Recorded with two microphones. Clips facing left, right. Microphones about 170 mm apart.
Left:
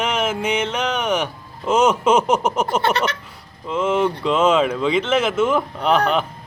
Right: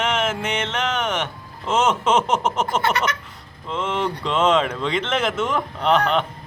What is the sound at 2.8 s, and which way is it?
Speech, 30° left (ahead or behind).